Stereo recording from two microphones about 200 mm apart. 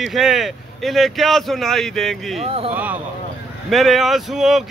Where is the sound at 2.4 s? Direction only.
30° right (ahead or behind).